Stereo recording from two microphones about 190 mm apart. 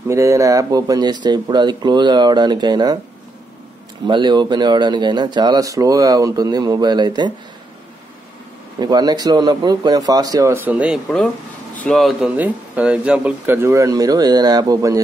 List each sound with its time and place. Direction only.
0.1 s speech: 15° right (ahead or behind)
4.1 s speech: 25° right (ahead or behind)
8.7 s speech: 20° right (ahead or behind)